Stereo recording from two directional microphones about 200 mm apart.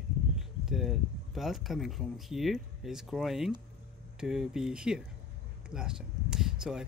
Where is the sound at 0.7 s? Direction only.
Centre (ahead or behind).